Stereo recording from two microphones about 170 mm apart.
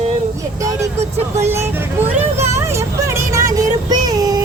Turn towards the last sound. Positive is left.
turn(degrees=-20)  # may be behind; listen again after turning